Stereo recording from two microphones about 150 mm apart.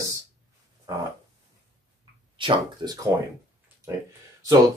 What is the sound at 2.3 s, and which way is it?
Speech, 35° right (ahead or behind).